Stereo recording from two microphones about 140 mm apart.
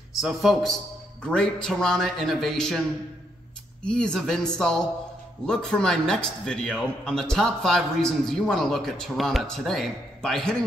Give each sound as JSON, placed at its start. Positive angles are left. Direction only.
{"t": 0.2, "sound": "a man's voice", "side_deg": -5}
{"t": 3.8, "sound": "a man's voice", "side_deg": 5}